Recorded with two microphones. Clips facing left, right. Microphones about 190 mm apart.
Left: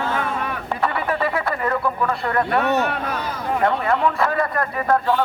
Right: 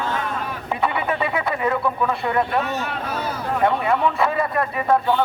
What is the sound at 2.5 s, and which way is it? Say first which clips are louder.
Speech: left 4 dB; 65° left (ahead or behind).